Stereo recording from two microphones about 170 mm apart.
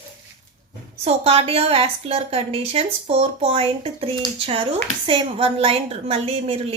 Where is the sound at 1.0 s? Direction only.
35° right (ahead or behind).